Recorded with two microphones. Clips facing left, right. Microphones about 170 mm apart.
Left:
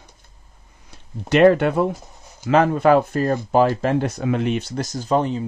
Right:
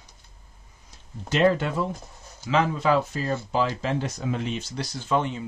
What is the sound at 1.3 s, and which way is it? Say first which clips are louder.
Speech: left 8 dB; 65° left (ahead or behind).